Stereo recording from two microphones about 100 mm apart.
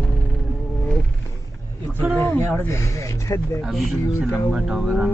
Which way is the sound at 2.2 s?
20° left (ahead or behind).